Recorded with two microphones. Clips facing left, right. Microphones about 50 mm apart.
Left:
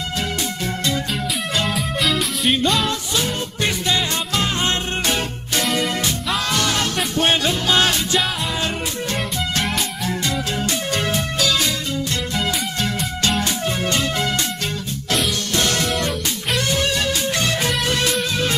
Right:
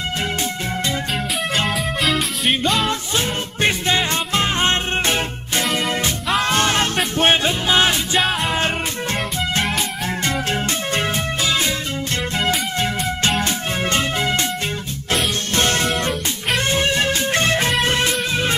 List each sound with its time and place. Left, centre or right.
1.7 s music: centre
2.9 s music: right
7.6 s music: centre
10.0 s music: right
15.5 s music: right